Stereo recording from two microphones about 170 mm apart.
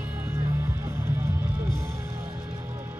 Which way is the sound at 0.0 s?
10° right (ahead or behind).